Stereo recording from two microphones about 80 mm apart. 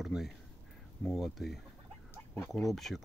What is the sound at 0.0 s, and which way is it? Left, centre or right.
Speech, centre.